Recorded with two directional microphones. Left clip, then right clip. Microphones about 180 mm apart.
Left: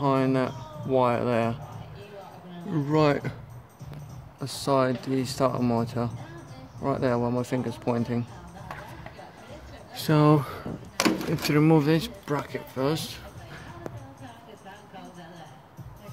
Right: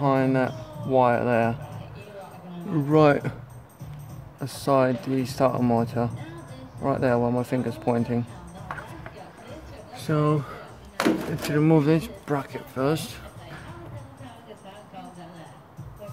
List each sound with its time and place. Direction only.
0.0 s a sound: 5° left (ahead or behind)
2.7 s speech: 5° right (ahead or behind)
4.4 s speech: centre (ahead or behind)
9.9 s speech: 20° left (ahead or behind)
11.3 s speech: 10° left (ahead or behind)
11.7 s speech: centre (ahead or behind)